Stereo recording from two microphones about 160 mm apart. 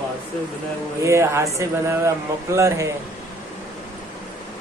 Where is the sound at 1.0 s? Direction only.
15° right (ahead or behind).